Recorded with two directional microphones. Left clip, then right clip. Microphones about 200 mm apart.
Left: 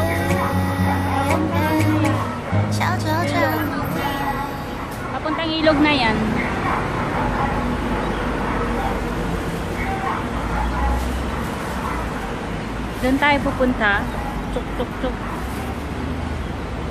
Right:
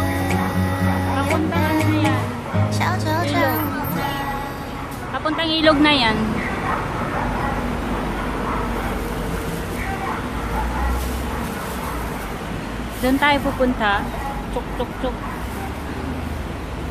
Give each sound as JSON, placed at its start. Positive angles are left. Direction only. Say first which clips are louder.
{"t": 0.0, "sound": "music", "louder": "left 2 dB", "side_deg": 0}
{"t": 5.2, "sound": "a woman's voice", "louder": "right 2 dB", "side_deg": -20}
{"t": 13.0, "sound": "speech", "louder": "even", "side_deg": -10}